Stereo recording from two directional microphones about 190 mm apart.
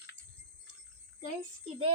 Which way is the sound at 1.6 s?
30° right (ahead or behind).